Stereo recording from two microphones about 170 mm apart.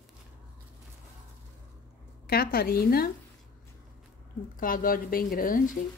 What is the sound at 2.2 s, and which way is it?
Speech, 60° left (ahead or behind).